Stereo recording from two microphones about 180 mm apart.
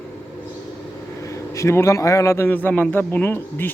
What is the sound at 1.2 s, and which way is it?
A man's voice, 15° left (ahead or behind).